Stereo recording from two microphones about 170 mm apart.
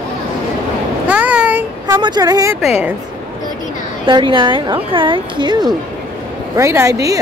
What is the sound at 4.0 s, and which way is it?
A woman's voice, 30° right (ahead or behind).